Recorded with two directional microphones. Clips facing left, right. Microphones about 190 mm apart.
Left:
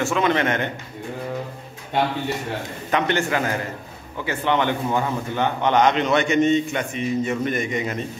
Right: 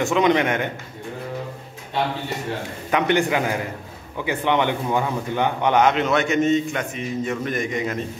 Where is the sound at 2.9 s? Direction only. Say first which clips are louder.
Right 2 dB; 15° right (ahead or behind).